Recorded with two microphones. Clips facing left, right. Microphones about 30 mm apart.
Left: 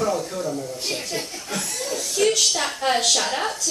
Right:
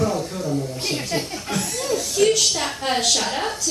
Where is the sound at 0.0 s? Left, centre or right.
Centre.